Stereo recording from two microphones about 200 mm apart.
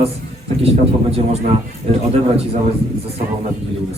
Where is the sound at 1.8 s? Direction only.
35° right (ahead or behind).